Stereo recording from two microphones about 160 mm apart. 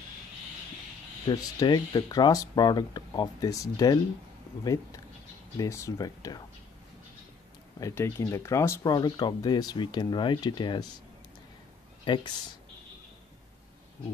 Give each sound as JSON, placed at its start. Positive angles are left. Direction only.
{"t": 1.2, "sound": "speech", "side_deg": 25}
{"t": 5.6, "sound": "speech", "side_deg": 20}
{"t": 7.8, "sound": "speech", "side_deg": 15}
{"t": 12.0, "sound": "speech", "side_deg": 30}